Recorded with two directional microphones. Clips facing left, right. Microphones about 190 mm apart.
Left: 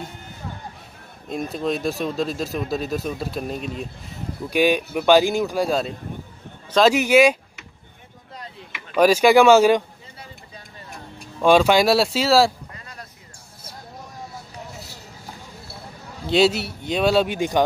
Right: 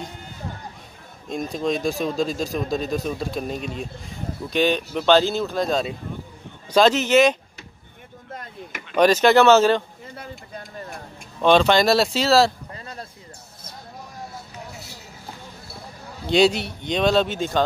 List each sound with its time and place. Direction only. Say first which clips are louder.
1.3 s speech: even; 5° left (ahead or behind)
8.3 s chop: right 3 dB; 50° right (ahead or behind)
8.9 s speech: left 1 dB; 10° left (ahead or behind)
11.4 s speech: left 1 dB; 10° left (ahead or behind)
12.7 s a sound: right 5 dB; 30° right (ahead or behind)
16.3 s speech: even; 5° left (ahead or behind)